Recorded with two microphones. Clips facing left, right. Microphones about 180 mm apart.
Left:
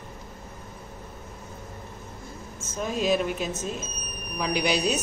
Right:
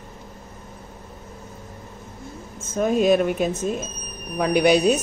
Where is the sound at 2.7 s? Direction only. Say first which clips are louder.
Right 7 dB; 55° right (ahead or behind).